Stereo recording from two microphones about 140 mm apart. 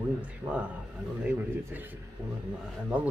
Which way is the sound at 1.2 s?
10° right (ahead or behind).